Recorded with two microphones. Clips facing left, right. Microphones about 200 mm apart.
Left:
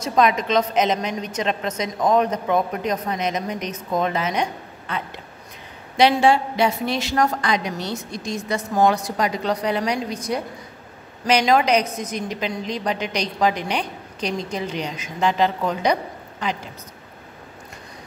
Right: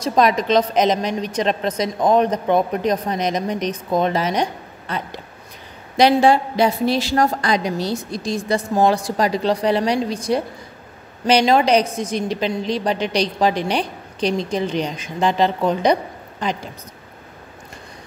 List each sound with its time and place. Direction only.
0.0 s a woman's voice: 35° right (ahead or behind)